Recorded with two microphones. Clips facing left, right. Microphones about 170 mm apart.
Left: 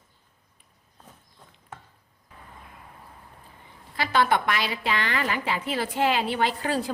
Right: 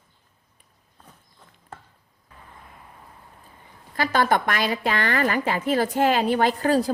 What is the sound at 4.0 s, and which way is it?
A woman's voice, 45° right (ahead or behind).